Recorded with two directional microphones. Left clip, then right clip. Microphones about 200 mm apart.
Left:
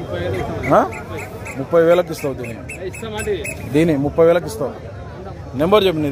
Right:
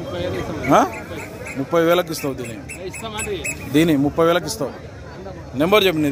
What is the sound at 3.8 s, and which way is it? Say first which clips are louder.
A man's voice: left 2 dB; 5° right (ahead or behind).